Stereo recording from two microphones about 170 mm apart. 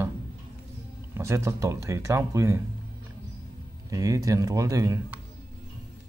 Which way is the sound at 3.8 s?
20° right (ahead or behind).